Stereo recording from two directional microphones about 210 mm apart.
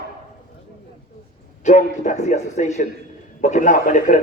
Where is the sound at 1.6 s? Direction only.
35° left (ahead or behind).